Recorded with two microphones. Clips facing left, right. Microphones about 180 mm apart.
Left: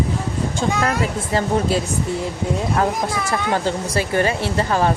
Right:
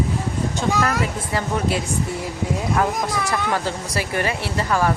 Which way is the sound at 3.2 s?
25° left (ahead or behind).